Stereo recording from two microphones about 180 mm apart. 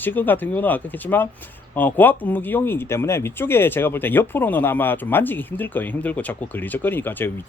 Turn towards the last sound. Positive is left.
turn(degrees=10)  # may be behind; listen again after turning